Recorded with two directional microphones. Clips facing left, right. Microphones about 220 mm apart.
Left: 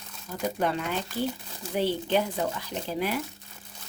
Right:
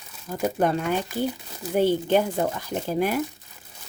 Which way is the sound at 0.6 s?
45° right (ahead or behind).